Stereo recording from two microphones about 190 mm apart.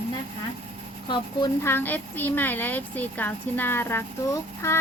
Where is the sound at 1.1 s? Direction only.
25° left (ahead or behind).